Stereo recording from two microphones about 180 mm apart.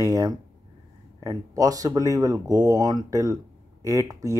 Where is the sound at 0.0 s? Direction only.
20° right (ahead or behind).